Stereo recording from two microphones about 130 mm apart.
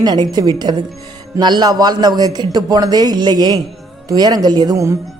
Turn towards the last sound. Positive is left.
turn(degrees=-25)  # may be behind; listen again after turning